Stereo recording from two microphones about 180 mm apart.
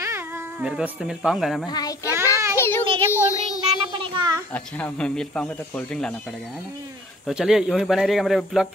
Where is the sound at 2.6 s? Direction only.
15° left (ahead or behind).